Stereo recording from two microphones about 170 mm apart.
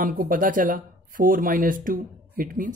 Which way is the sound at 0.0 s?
55° right (ahead or behind).